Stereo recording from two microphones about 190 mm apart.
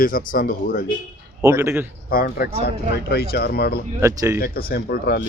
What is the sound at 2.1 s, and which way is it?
Speech, 50° left (ahead or behind).